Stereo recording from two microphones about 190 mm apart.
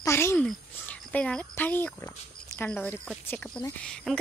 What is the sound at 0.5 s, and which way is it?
A woman's voice, 5° left (ahead or behind).